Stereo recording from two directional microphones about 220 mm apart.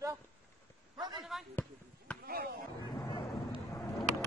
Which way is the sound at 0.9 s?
20° right (ahead or behind).